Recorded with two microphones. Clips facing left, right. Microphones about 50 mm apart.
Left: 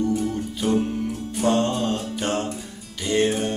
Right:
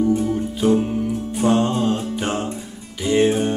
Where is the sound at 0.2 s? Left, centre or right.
Centre.